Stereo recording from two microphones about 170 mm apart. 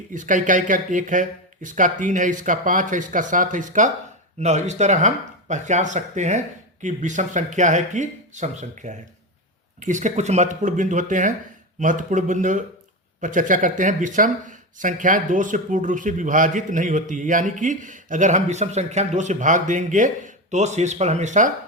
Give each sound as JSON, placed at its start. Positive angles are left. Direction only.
{"t": 0.1, "sound": "speech", "side_deg": -50}